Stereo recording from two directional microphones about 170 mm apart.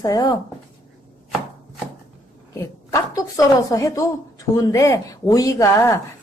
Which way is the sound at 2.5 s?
20° left (ahead or behind).